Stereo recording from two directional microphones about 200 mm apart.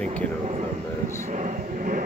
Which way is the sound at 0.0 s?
5° left (ahead or behind).